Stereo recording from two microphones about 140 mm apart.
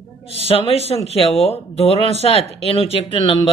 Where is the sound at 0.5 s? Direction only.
45° left (ahead or behind).